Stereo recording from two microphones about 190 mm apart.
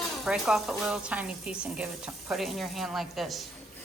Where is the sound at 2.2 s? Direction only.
Centre (ahead or behind).